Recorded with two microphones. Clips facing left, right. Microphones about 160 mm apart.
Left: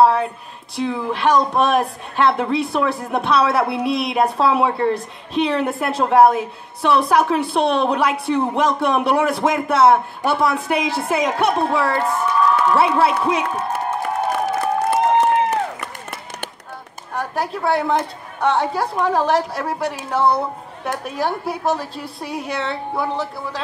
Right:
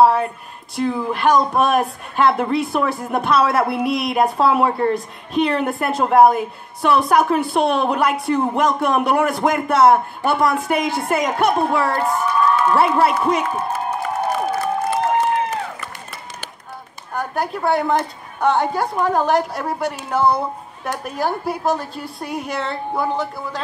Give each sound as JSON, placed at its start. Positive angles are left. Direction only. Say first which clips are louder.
{"t": 0.0, "sound": "a woman's voice", "louder": "even", "side_deg": 0}
{"t": 14.9, "sound": "run", "louder": "left 4 dB", "side_deg": 60}
{"t": 17.1, "sound": "a woman's voice", "louder": "even", "side_deg": 0}